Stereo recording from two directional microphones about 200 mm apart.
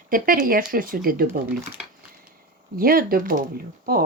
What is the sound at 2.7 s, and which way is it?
Speech, 45° right (ahead or behind).